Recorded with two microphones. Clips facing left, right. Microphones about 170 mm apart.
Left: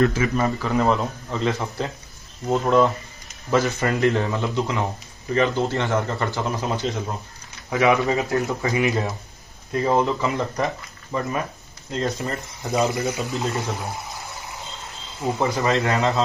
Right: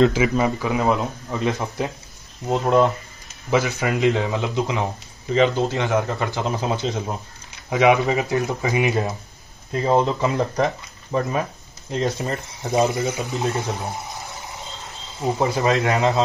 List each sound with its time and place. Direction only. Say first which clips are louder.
0.0 s speech: right 3 dB; 10° right (ahead or behind)
4.0 s speech: right 1 dB; 15° right (ahead or behind)
15.2 s speech: right 2 dB; 20° right (ahead or behind)